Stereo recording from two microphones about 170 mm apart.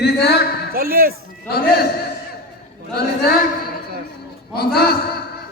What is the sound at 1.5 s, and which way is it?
Speech, 65° left (ahead or behind).